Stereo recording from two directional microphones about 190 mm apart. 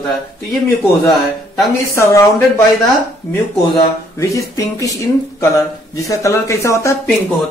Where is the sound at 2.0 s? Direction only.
15° left (ahead or behind).